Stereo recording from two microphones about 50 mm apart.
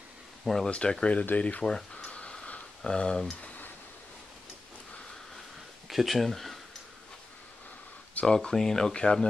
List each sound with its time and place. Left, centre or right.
0.7 s speech: centre
1.2 s speech: left
1.6 s speech: centre
2.0 s a sound: left
2.8 s speech: centre
5.9 s speech: centre
8.3 s speech: centre